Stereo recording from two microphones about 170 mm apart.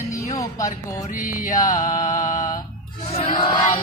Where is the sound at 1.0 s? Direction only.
50° left (ahead or behind).